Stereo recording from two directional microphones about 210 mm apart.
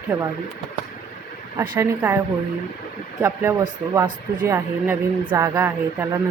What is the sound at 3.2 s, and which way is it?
Speech, 15° right (ahead or behind).